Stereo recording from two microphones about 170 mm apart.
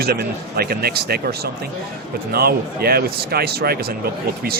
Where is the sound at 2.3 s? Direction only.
65° right (ahead or behind).